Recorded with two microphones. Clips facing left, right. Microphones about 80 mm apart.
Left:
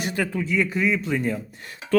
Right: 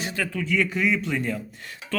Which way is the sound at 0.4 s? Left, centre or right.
Centre.